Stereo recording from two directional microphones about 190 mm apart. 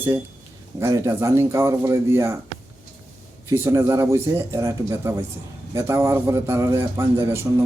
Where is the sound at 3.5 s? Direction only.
15° right (ahead or behind).